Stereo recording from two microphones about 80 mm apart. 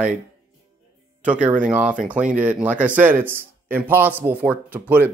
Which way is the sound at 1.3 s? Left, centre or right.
Centre.